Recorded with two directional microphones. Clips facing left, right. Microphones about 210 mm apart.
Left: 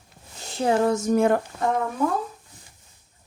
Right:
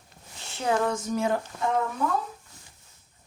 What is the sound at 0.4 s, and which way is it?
Speech, 35° left (ahead or behind).